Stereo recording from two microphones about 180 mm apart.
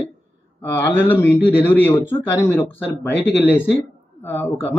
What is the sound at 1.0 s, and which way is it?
Speech, 10° left (ahead or behind).